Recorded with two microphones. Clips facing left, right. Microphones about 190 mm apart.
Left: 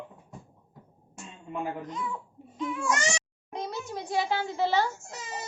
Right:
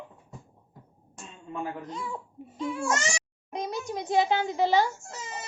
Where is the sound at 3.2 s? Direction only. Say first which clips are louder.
Right 2 dB; 15° right (ahead or behind).